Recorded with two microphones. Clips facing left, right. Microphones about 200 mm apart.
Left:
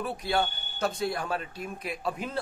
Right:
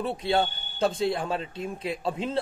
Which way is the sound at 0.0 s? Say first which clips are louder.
Right 3 dB; 25° right (ahead or behind).